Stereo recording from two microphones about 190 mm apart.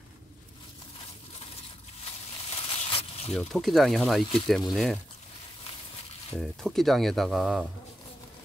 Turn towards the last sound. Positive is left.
turn(degrees=0)  # may be behind; listen again after turning